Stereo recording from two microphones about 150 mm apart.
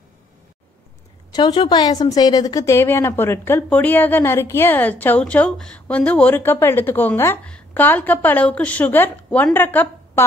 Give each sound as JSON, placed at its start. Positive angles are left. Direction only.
{"t": 1.3, "sound": "a woman's voice", "side_deg": 30}